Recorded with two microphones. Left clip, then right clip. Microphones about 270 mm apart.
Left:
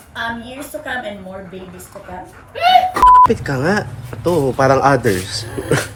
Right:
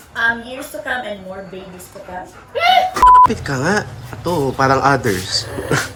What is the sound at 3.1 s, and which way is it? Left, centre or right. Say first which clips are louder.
Speech: right 1 dB; centre.